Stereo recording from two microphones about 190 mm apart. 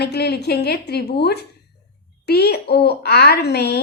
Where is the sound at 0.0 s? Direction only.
60° left (ahead or behind).